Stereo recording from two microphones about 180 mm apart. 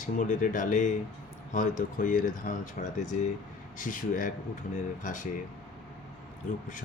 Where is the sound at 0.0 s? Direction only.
45° left (ahead or behind).